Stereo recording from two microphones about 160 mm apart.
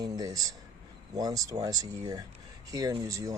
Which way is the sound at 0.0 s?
20° right (ahead or behind).